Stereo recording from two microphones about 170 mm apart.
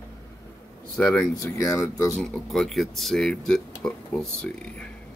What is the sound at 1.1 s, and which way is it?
Speech, 20° left (ahead or behind).